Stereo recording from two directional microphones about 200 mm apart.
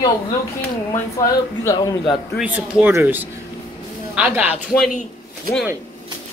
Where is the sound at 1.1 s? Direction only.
15° left (ahead or behind).